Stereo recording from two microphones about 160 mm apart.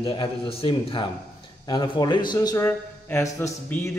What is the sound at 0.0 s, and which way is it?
A man's voice, 30° left (ahead or behind).